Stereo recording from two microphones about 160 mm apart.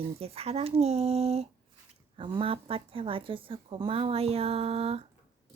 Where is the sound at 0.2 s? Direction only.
40° right (ahead or behind).